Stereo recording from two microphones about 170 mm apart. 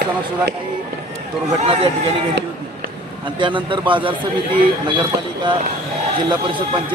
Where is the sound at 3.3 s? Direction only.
30° right (ahead or behind).